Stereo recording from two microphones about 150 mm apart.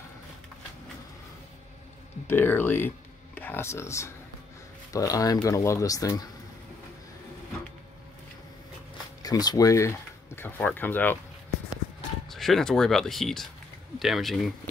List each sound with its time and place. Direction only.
2.2 s speech: 15° left (ahead or behind)
9.2 s speech: 25° left (ahead or behind)
12.3 s speech: centre (ahead or behind)